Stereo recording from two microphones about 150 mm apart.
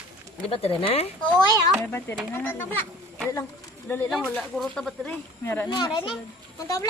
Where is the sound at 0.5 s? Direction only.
35° left (ahead or behind).